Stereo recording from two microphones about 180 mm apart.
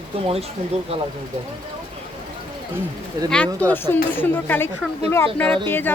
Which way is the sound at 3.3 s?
10° left (ahead or behind).